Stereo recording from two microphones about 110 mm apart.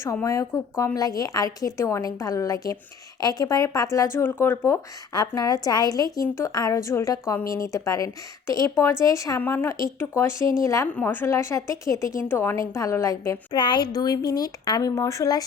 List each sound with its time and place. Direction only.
0.0 s a woman's voice: 25° left (ahead or behind)
5.1 s a woman's voice: 35° left (ahead or behind)
9.4 s a woman's voice: 20° left (ahead or behind)
10.9 s a woman's voice: 20° left (ahead or behind)
13.6 s a woman's voice: 40° left (ahead or behind)